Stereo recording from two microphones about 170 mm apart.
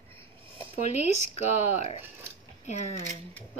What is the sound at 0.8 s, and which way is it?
Speech, 40° left (ahead or behind).